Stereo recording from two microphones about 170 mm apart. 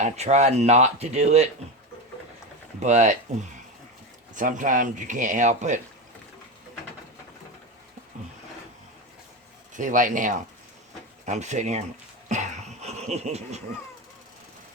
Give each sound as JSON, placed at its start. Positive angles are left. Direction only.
{"t": 0.0, "sound": "speech", "side_deg": -40}
{"t": 2.8, "sound": "speech", "side_deg": -45}
{"t": 4.4, "sound": "speech", "side_deg": -50}
{"t": 9.7, "sound": "speech", "side_deg": -50}
{"t": 12.3, "sound": "a sound", "side_deg": -45}